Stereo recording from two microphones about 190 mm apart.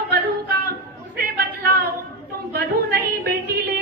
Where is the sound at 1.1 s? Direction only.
55° right (ahead or behind).